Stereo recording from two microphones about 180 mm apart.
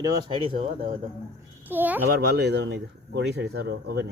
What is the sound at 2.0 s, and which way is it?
Speech, 60° right (ahead or behind).